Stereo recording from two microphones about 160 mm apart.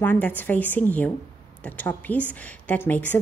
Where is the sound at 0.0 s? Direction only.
10° left (ahead or behind).